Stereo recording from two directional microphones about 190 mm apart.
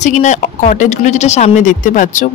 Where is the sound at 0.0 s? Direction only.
40° left (ahead or behind).